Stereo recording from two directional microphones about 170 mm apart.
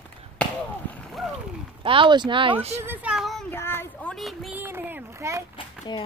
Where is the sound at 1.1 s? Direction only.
Centre (ahead or behind).